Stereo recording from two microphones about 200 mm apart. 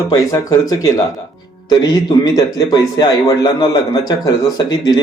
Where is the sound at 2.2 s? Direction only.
20° left (ahead or behind).